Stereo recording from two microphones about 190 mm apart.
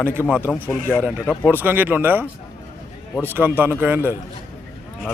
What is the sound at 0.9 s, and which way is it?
A man's voice, 10° right (ahead or behind).